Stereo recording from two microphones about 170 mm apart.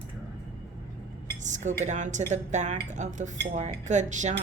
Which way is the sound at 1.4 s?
45° right (ahead or behind).